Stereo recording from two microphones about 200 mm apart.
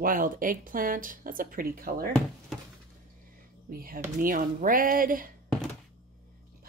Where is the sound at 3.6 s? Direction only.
45° right (ahead or behind).